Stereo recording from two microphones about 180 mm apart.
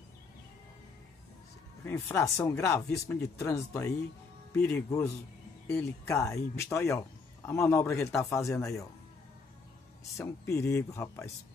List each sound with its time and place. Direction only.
1.9 s speech: 15° left (ahead or behind)
10.1 s speech: 15° left (ahead or behind)